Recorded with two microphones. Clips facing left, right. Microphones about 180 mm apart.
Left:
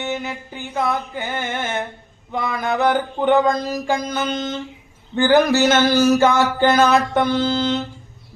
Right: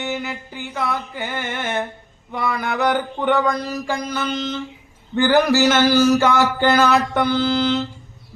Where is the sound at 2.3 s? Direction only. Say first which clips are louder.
Left 1 dB; 20° left (ahead or behind).